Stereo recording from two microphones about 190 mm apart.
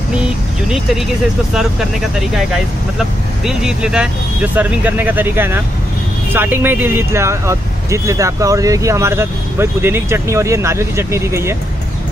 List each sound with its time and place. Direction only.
0.7 s speech: centre (ahead or behind)